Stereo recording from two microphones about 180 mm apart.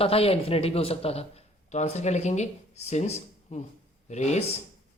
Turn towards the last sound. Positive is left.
turn(degrees=40)  # may be behind; listen again after turning